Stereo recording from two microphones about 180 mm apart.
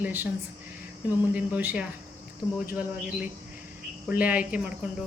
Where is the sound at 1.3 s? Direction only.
10° right (ahead or behind).